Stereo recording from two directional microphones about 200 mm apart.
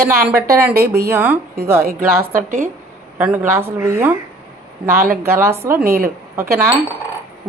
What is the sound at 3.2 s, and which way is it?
Speech, 10° right (ahead or behind).